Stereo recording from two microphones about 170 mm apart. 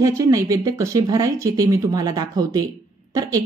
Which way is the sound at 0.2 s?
20° right (ahead or behind).